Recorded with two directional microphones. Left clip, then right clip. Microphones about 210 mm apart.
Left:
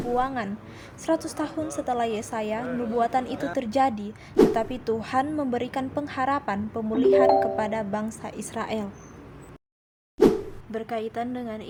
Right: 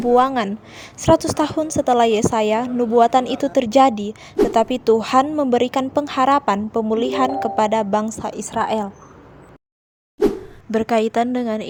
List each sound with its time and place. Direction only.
0.1 s a woman's voice: 40° right (ahead or behind)
10.2 s plop: centre (ahead or behind)
10.7 s a woman's voice: 40° right (ahead or behind)